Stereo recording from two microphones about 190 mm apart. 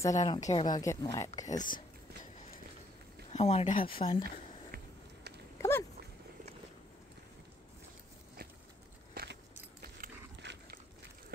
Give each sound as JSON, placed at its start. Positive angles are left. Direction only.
{"t": 0.1, "sound": "a woman's voice", "side_deg": 35}
{"t": 0.7, "sound": "speech", "side_deg": 20}
{"t": 1.5, "sound": "speech", "side_deg": 40}
{"t": 3.3, "sound": "a woman's voice", "side_deg": 30}
{"t": 3.7, "sound": "speech", "side_deg": 50}
{"t": 5.6, "sound": "a sound", "side_deg": 10}
{"t": 9.1, "sound": "biting", "side_deg": -55}